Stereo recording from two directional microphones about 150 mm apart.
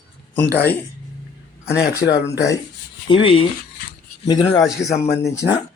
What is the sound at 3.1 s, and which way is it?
A man's voice, 35° left (ahead or behind).